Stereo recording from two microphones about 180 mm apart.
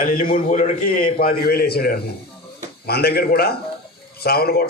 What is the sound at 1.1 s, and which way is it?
A man's voice, 55° left (ahead or behind).